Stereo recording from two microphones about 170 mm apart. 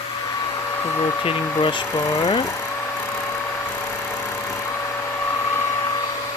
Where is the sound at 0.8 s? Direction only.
15° left (ahead or behind).